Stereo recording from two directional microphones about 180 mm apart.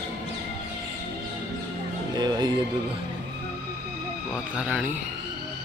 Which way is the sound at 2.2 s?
20° right (ahead or behind).